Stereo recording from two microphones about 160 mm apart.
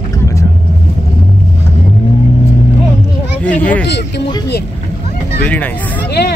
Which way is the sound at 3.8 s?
90° left.